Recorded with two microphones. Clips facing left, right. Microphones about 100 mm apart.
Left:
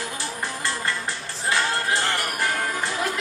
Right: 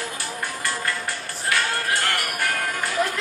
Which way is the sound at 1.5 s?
25° left (ahead or behind).